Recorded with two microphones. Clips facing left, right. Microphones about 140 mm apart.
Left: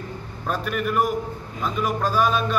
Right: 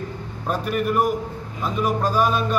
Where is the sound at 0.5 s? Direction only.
40° right (ahead or behind).